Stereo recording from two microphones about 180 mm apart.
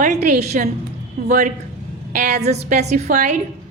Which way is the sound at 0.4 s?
40° right (ahead or behind).